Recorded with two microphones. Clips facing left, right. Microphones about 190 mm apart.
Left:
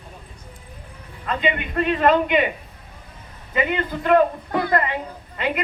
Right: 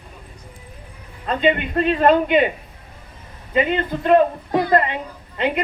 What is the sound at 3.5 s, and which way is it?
A woman's voice, 25° right (ahead or behind).